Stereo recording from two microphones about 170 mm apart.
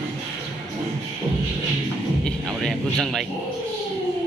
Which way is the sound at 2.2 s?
Centre (ahead or behind).